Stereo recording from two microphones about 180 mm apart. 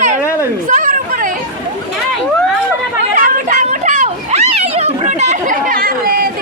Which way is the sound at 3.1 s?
45° right (ahead or behind).